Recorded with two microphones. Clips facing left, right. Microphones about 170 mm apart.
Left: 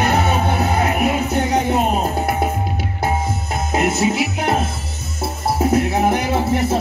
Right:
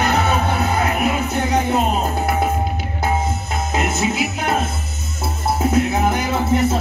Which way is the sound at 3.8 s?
55° left (ahead or behind).